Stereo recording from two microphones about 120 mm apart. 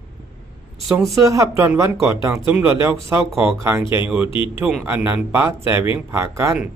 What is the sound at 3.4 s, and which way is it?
Speech, 25° right (ahead or behind).